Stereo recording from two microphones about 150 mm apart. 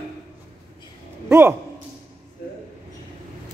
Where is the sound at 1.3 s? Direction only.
15° right (ahead or behind).